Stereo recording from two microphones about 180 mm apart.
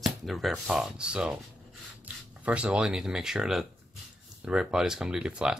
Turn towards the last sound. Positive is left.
turn(degrees=-5)  # may be behind; listen again after turning